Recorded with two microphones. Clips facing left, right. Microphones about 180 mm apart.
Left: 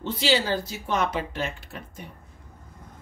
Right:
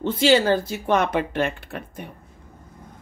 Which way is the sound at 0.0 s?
50° right (ahead or behind).